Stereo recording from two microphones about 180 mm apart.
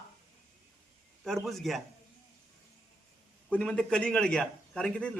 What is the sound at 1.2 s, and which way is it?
Speech, centre (ahead or behind).